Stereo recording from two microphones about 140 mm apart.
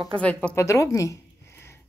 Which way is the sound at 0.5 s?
20° left (ahead or behind).